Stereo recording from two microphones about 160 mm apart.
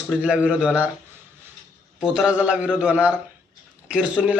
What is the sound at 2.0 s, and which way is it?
A man's voice, 5° right (ahead or behind).